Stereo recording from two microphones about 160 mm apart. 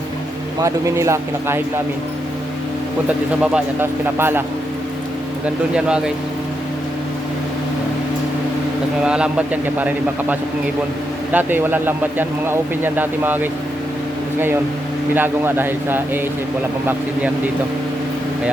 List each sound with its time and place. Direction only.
0.6 s speech: 20° right (ahead or behind)
3.4 s speech: 10° right (ahead or behind)
9.0 s speech: 5° right (ahead or behind)